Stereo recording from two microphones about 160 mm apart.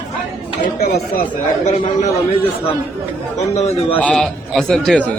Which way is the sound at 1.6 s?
45° left (ahead or behind).